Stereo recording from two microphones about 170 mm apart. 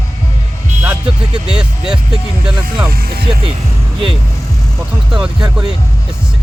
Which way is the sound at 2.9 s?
60° right (ahead or behind).